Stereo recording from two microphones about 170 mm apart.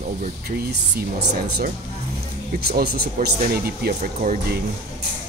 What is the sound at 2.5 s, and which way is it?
Speech, 65° right (ahead or behind).